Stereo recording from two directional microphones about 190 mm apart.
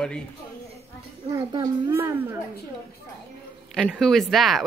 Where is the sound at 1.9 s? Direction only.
10° right (ahead or behind).